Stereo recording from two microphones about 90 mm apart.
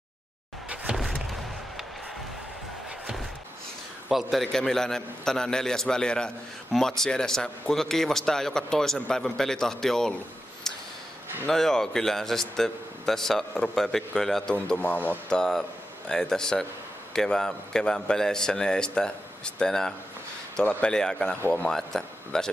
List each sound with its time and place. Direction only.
0.9 s a sound: centre (ahead or behind)
4.1 s speech: centre (ahead or behind)
11.4 s speech: 5° left (ahead or behind)
14.8 s speech: 20° left (ahead or behind)
15.3 s a man's voice: 5° left (ahead or behind)
21.4 s speech: 20° left (ahead or behind)
21.6 s a man's voice: 5° left (ahead or behind)